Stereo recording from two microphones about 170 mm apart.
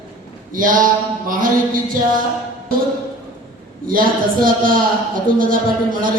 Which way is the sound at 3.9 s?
55° right (ahead or behind).